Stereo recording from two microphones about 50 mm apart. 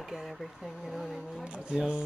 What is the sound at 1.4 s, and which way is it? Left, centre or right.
Speech, centre.